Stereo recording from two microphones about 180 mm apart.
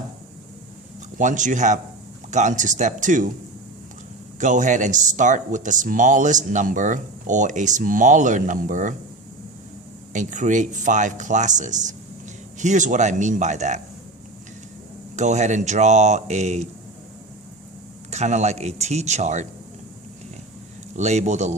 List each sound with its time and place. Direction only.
1.2 s speech: 45° right (ahead or behind)
4.4 s speech: 45° right (ahead or behind)
10.1 s speech: 45° right (ahead or behind)
15.1 s speech: 40° right (ahead or behind)
18.1 s speech: 40° right (ahead or behind)
20.9 s speech: 40° right (ahead or behind)